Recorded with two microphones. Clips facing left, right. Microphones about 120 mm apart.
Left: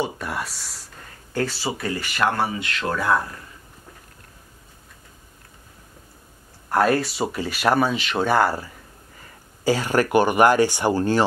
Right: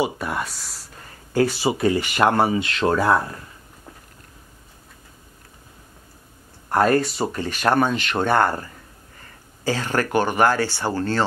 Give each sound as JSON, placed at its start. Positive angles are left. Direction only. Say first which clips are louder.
{"t": 0.0, "sound": "speech", "louder": "right 3 dB", "side_deg": 0}
{"t": 1.3, "sound": "speech", "louder": "right 6 dB", "side_deg": -15}
{"t": 6.7, "sound": "speech", "louder": "right 1 dB", "side_deg": 5}
{"t": 9.7, "sound": "speech", "louder": "left 3 dB", "side_deg": 10}